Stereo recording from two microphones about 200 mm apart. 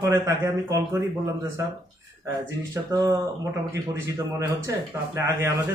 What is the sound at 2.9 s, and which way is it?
Speech, 20° right (ahead or behind).